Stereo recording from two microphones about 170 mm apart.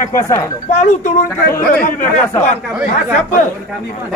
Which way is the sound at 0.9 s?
45° left (ahead or behind).